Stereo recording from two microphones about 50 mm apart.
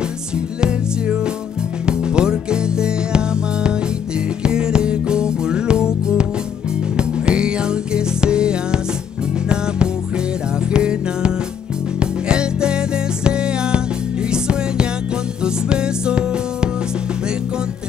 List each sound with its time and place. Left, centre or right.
0.6 s music: centre
10.7 s music: centre